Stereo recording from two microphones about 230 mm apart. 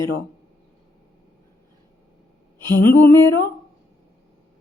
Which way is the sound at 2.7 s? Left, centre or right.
Centre.